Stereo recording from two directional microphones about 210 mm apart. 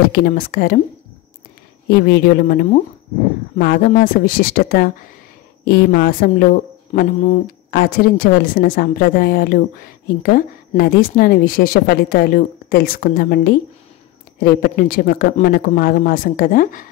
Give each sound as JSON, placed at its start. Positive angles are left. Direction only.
{"t": 0.1, "sound": "a woman's voice", "side_deg": 45}
{"t": 1.9, "sound": "a woman's voice", "side_deg": 50}
{"t": 7.7, "sound": "a woman's voice", "side_deg": 45}